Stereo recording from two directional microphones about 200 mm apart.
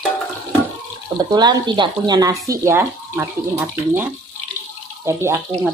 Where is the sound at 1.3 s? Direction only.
20° right (ahead or behind).